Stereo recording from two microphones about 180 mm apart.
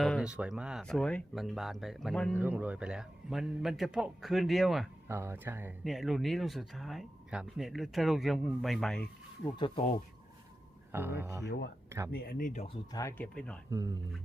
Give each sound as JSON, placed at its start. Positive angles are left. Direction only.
{"t": 0.0, "sound": "speech", "side_deg": 0}
{"t": 2.3, "sound": "speech", "side_deg": -10}
{"t": 5.0, "sound": "speech", "side_deg": -15}
{"t": 5.8, "sound": "speech", "side_deg": 0}
{"t": 9.4, "sound": "speech", "side_deg": 25}
{"t": 10.9, "sound": "speech", "side_deg": -10}
{"t": 12.1, "sound": "speech", "side_deg": 60}
{"t": 12.6, "sound": "speech", "side_deg": 20}
{"t": 13.7, "sound": "speech", "side_deg": -20}